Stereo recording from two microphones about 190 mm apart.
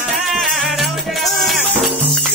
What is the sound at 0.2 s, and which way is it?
Music, centre (ahead or behind).